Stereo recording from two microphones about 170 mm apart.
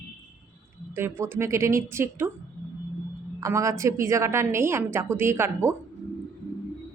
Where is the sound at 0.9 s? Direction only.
15° right (ahead or behind).